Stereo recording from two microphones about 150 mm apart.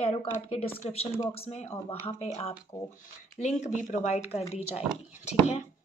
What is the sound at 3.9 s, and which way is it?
Speech, 55° left (ahead or behind).